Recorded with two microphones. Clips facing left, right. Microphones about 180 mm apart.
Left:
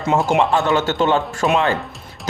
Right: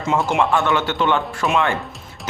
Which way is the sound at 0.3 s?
40° left (ahead or behind).